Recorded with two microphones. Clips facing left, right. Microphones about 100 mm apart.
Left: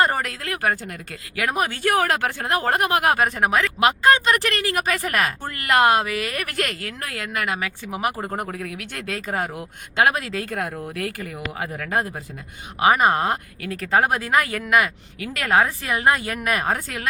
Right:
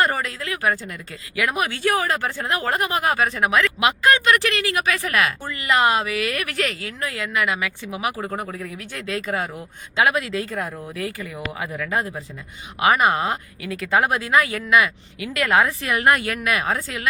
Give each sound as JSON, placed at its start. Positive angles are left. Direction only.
{"t": 0.2, "sound": "speech", "side_deg": 55}
{"t": 2.0, "sound": "speech", "side_deg": 70}
{"t": 3.3, "sound": "speech", "side_deg": 40}
{"t": 5.5, "sound": "speech", "side_deg": 50}
{"t": 8.1, "sound": "speech", "side_deg": 20}
{"t": 8.4, "sound": "speech", "side_deg": 60}
{"t": 9.2, "sound": "speech", "side_deg": 40}
{"t": 10.9, "sound": "speech", "side_deg": 60}
{"t": 11.6, "sound": "speech", "side_deg": 45}
{"t": 15.9, "sound": "speech", "side_deg": 25}